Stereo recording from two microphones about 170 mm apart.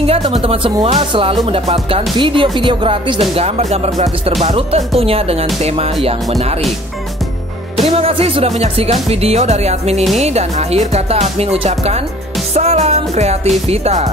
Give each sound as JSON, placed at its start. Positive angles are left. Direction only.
{"t": 0.0, "sound": "speech", "side_deg": -35}
{"t": 7.7, "sound": "speech", "side_deg": -35}